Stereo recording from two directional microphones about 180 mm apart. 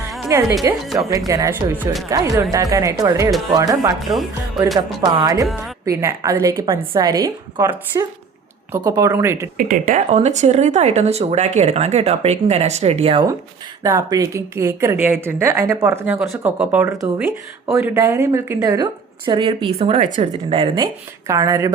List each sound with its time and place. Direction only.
0.3 s a woman's voice: 15° right (ahead or behind)
4.6 s speech: centre (ahead or behind)
4.9 s a woman's voice: 25° right (ahead or behind)
9.6 s speech: 50° right (ahead or behind); by 13.2 s 35° right (ahead or behind)
13.8 s a woman's voice: 20° right (ahead or behind)